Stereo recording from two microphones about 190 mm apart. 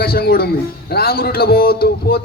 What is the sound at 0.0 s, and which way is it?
A man's voice, 55° left (ahead or behind).